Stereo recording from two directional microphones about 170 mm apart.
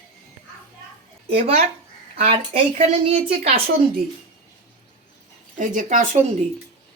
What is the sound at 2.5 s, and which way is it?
A woman's voice, 40° right (ahead or behind).